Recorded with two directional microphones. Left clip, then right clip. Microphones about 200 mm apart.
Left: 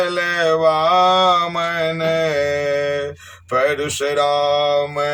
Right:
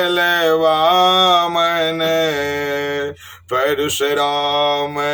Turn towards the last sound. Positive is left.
turn(degrees=-20)  # may be behind; listen again after turning